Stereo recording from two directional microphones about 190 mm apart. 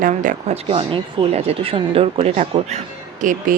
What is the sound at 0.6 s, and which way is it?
Speech, 30° right (ahead or behind).